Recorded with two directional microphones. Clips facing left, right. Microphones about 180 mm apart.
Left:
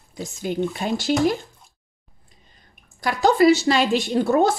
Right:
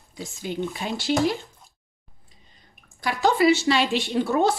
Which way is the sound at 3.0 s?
40° left (ahead or behind).